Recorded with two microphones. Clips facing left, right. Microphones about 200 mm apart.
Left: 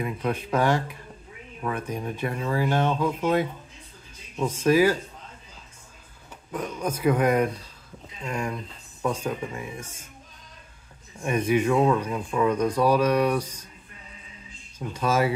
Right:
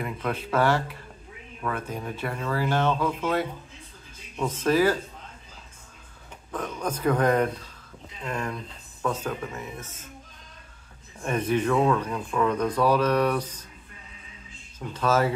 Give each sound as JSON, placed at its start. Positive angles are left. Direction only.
{"t": 0.0, "sound": "speech", "side_deg": 15}
{"t": 6.5, "sound": "speech", "side_deg": 10}
{"t": 11.2, "sound": "speech", "side_deg": 10}
{"t": 14.9, "sound": "speech", "side_deg": 10}